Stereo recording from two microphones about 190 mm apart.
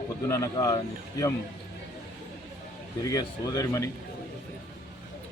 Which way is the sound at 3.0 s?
20° left (ahead or behind).